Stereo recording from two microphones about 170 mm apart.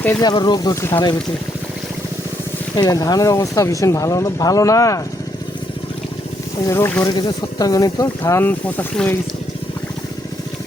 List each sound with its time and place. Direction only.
0.2 s speech: 25° left (ahead or behind)
2.7 s speech: 20° left (ahead or behind)
6.7 s speech: 15° left (ahead or behind)